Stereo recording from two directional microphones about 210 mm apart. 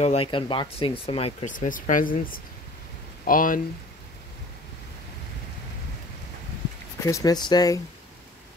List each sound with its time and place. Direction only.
0.0 s speech: 30° left (ahead or behind)
7.1 s speech: 15° left (ahead or behind)